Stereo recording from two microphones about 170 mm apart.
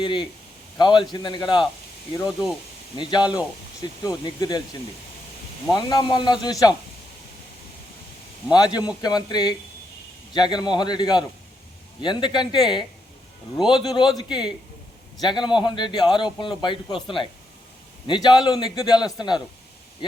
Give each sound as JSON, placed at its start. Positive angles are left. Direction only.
{"t": 0.0, "sound": "a man's voice", "side_deg": 25}
{"t": 3.2, "sound": "a man's voice", "side_deg": 20}
{"t": 8.5, "sound": "a man's voice", "side_deg": 25}